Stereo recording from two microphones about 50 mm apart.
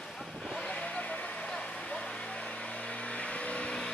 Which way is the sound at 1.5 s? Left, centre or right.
Centre.